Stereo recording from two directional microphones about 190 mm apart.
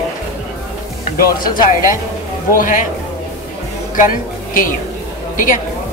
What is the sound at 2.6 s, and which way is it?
Speech, 45° left (ahead or behind).